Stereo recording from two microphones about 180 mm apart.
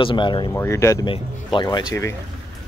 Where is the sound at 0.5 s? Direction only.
15° left (ahead or behind).